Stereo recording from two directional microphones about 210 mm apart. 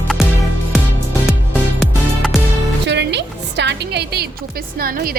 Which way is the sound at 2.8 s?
55° right (ahead or behind).